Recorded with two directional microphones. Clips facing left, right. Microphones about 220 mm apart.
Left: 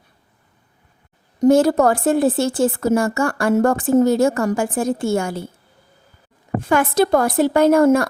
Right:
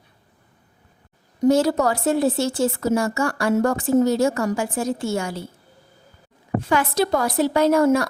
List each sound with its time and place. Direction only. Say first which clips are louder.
1.4 s a woman's voice: left 4 dB; 50° left (ahead or behind)
6.6 s a woman's voice: left 4 dB; 50° left (ahead or behind)